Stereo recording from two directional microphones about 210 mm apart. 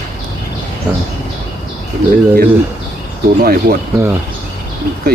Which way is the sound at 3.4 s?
45° right (ahead or behind).